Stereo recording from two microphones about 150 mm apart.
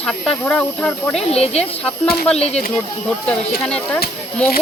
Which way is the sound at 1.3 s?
45° left (ahead or behind).